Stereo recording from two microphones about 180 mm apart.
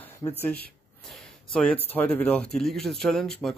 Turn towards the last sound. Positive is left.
turn(degrees=5)  # may be behind; listen again after turning